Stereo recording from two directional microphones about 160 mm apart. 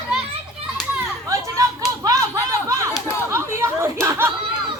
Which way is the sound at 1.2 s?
20° right (ahead or behind).